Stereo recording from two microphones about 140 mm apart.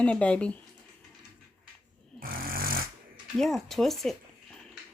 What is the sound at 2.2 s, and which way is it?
Snoring, 90° right.